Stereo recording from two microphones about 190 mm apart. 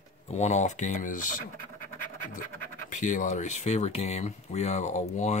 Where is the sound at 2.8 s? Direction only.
40° left (ahead or behind).